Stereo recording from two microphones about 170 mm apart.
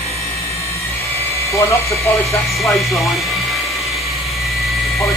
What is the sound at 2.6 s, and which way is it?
Speech, centre (ahead or behind).